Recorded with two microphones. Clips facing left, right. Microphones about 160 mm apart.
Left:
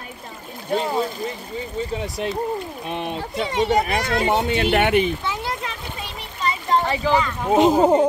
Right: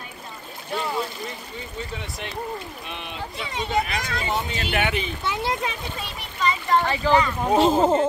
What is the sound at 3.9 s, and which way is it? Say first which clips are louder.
Speech: left 7 dB; 60° left (ahead or behind).